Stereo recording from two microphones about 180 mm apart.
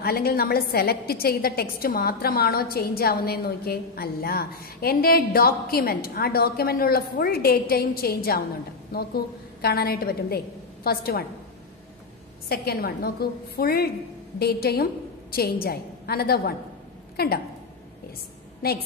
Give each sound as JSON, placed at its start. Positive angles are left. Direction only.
{"t": 0.0, "sound": "a woman's voice", "side_deg": 60}
{"t": 12.4, "sound": "a woman's voice", "side_deg": 60}